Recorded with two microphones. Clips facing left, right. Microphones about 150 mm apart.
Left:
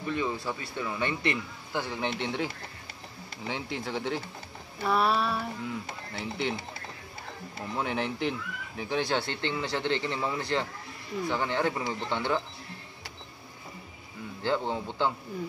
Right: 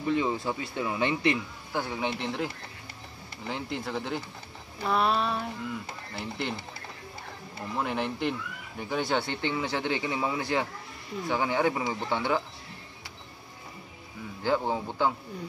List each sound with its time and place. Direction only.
0.1 s speech: 20° right (ahead or behind)
1.7 s speech: centre (ahead or behind)
7.7 s speech: centre (ahead or behind)
14.4 s speech: 5° right (ahead or behind)